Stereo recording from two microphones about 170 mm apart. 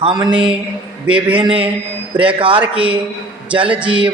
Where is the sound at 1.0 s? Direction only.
5° right (ahead or behind).